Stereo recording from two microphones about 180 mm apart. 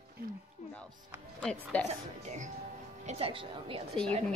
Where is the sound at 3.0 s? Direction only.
35° right (ahead or behind).